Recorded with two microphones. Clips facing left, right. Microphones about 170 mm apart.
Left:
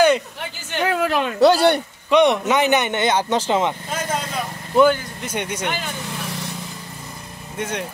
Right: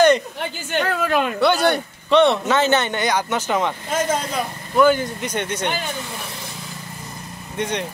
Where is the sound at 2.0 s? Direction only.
15° left (ahead or behind).